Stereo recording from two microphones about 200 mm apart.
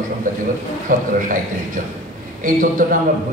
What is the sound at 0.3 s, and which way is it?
A man's voice, 40° right (ahead or behind).